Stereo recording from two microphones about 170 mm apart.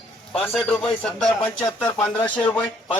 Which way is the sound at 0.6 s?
5° left (ahead or behind).